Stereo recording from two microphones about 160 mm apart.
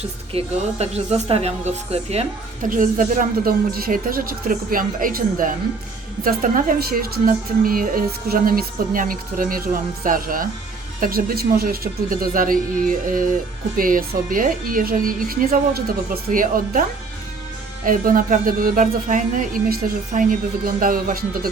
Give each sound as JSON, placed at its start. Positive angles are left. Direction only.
{"t": 0.0, "sound": "a woman's voice", "side_deg": -40}
{"t": 2.6, "sound": "a woman's voice", "side_deg": -55}
{"t": 17.8, "sound": "a woman's voice", "side_deg": -60}